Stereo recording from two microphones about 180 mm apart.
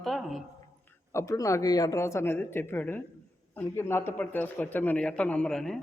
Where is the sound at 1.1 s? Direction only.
15° left (ahead or behind).